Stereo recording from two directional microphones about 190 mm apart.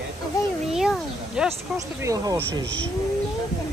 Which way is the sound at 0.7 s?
5° right (ahead or behind).